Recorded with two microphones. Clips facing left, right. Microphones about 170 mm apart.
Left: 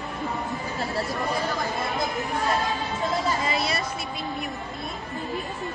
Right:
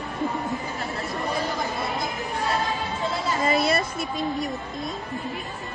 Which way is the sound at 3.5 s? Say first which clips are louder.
Right 5 dB; 55° right (ahead or behind).